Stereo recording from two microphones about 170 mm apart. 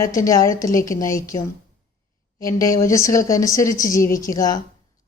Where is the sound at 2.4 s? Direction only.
20° left (ahead or behind).